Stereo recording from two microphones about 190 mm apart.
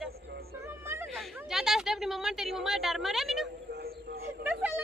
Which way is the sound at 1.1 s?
Centre (ahead or behind).